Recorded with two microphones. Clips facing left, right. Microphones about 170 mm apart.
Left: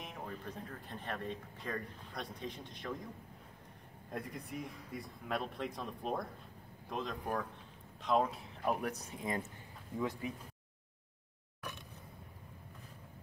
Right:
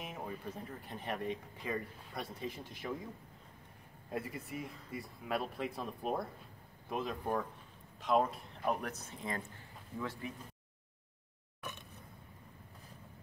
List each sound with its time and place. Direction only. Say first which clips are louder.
0.0 s speech: right 2 dB; 10° right (ahead or behind)
4.1 s speech: right 2 dB; 5° right (ahead or behind); by 10.3 s 15° left (ahead or behind)